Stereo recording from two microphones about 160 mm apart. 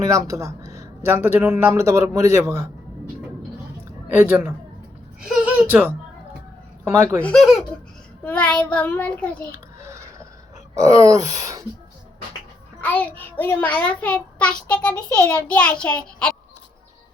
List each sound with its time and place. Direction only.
0.0 s speech: 20° right (ahead or behind)
4.2 s speech: 15° right (ahead or behind)
6.8 s speech: 15° right (ahead or behind)
7.2 s a child's voice: 5° left (ahead or behind)
9.8 s a sound: 20° right (ahead or behind)
10.8 s speech: 20° right (ahead or behind)
12.8 s child singing: 10° left (ahead or behind)
13.4 s a child's voice: 10° left (ahead or behind)